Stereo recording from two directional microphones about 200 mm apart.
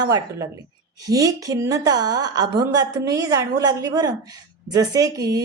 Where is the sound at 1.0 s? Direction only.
15° right (ahead or behind).